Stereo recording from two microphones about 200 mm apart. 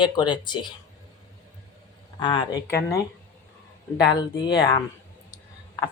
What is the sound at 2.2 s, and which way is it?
Speech, 20° left (ahead or behind).